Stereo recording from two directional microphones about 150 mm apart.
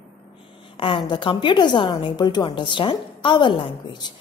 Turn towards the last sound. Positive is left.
turn(degrees=30)  # may be behind; listen again after turning